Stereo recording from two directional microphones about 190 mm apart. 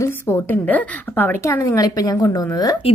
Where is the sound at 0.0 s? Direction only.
10° left (ahead or behind).